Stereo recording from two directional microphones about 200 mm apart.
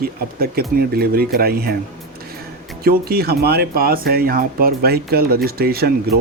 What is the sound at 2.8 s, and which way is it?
Speech, 50° right (ahead or behind).